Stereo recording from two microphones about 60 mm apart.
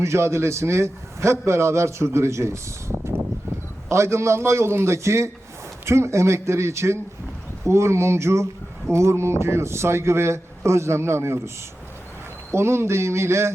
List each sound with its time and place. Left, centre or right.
0.0 s a man's voice: right